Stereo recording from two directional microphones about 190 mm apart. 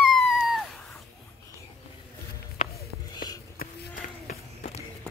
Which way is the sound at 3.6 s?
55° left (ahead or behind).